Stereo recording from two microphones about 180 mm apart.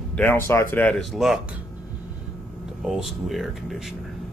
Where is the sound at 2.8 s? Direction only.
Centre (ahead or behind).